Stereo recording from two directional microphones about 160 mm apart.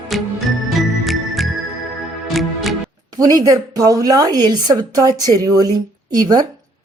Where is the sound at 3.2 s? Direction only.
25° right (ahead or behind).